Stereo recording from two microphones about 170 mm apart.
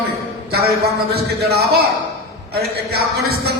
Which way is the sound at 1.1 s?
70° right (ahead or behind).